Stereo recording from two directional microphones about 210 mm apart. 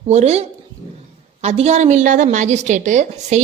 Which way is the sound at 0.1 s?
30° right (ahead or behind).